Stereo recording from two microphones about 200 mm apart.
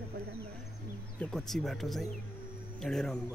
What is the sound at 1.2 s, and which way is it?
Speech, centre (ahead or behind).